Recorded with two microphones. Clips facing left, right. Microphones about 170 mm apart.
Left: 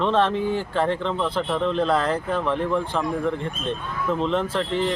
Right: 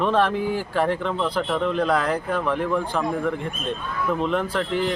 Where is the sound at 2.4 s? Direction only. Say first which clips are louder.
Even; 5° right (ahead or behind).